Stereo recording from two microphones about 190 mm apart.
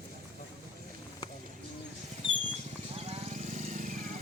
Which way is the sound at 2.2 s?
35° right (ahead or behind).